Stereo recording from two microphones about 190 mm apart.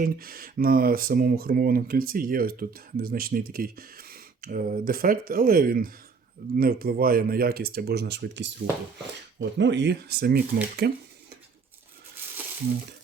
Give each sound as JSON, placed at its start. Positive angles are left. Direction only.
{"t": 0.0, "sound": "speech", "side_deg": -50}
{"t": 9.6, "sound": "speech", "side_deg": -70}